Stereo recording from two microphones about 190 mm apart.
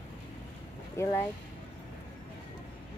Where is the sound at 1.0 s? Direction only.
15° left (ahead or behind).